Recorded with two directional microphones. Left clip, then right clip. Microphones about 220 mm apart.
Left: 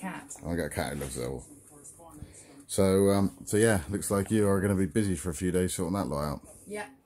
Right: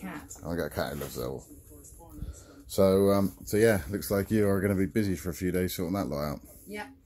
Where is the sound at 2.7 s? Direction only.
5° left (ahead or behind).